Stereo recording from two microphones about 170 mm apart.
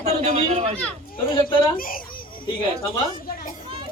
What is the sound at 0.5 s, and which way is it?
Speech, 35° right (ahead or behind).